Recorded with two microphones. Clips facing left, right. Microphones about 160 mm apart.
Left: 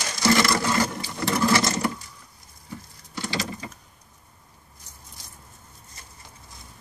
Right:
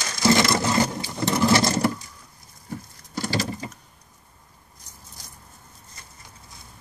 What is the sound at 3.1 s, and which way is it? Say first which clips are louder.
Patter: right 4 dB; 40° right (ahead or behind).